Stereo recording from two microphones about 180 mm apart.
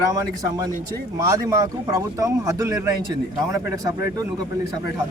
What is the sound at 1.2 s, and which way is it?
A man's voice, 20° right (ahead or behind).